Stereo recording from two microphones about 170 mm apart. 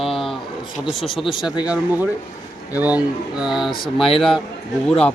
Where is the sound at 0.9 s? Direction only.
Centre (ahead or behind).